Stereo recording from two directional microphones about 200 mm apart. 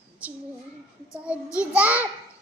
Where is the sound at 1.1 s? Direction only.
5° right (ahead or behind).